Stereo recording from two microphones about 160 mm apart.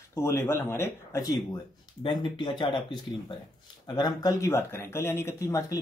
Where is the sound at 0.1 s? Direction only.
15° left (ahead or behind).